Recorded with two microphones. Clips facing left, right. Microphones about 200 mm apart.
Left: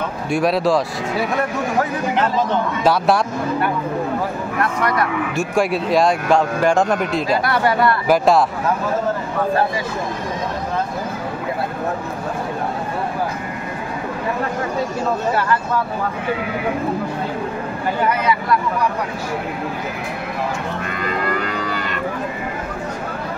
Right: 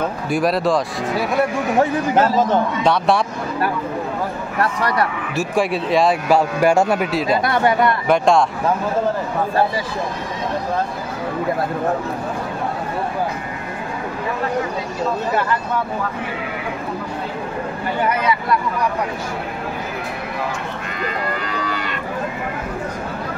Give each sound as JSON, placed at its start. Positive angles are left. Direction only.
{"t": 0.3, "sound": "a man's voice", "side_deg": 0}
{"t": 2.1, "sound": "a man's voice", "side_deg": -40}
{"t": 2.8, "sound": "a man's voice", "side_deg": 0}
{"t": 4.6, "sound": "speech", "side_deg": -30}
{"t": 5.3, "sound": "a man's voice", "side_deg": 0}
{"t": 7.4, "sound": "speech", "side_deg": -20}
{"t": 8.1, "sound": "a man's voice", "side_deg": 5}